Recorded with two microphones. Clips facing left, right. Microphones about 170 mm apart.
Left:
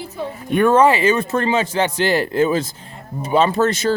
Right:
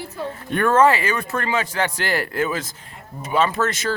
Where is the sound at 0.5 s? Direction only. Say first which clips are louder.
Left 3 dB; 15° left (ahead or behind).